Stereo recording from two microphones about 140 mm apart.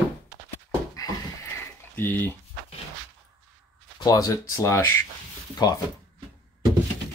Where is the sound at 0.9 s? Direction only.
25° left (ahead or behind).